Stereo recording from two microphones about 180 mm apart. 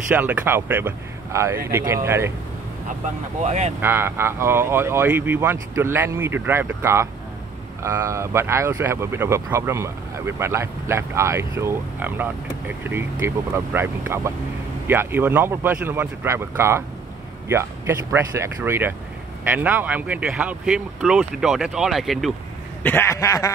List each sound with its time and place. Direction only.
0.1 s speech: 10° right (ahead or behind)
3.4 s speech: 40° right (ahead or behind)
3.8 s speech: 10° right (ahead or behind)
22.8 s a sound: 15° left (ahead or behind)